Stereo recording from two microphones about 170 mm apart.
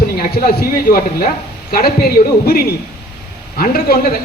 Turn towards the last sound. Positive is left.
turn(degrees=65)  # may be behind; listen again after turning